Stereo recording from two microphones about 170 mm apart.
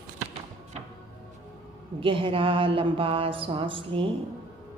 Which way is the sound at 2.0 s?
30° right (ahead or behind).